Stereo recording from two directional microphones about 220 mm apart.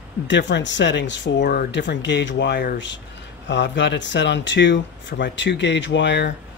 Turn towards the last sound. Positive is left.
turn(degrees=55)  # may be behind; listen again after turning